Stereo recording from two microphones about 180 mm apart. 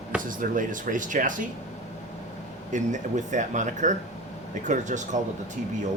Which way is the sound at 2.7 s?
45° right (ahead or behind).